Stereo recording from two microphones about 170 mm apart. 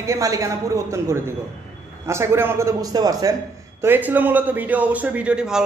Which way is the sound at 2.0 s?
15° right (ahead or behind).